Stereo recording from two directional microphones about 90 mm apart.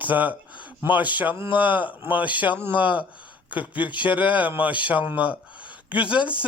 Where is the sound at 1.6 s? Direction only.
65° left (ahead or behind).